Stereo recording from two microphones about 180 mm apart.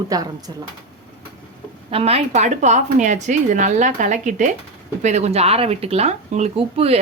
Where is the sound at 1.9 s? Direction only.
35° right (ahead or behind).